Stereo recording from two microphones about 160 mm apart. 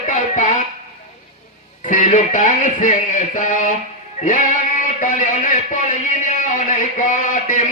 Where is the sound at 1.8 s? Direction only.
50° left (ahead or behind).